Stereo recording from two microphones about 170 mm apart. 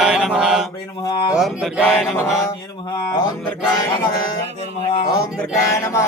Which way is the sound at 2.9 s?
20° left (ahead or behind).